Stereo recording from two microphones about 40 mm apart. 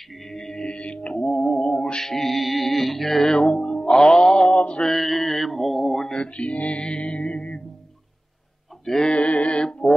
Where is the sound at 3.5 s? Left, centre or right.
Left.